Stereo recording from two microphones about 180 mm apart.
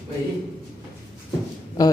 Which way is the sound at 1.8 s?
20° left (ahead or behind).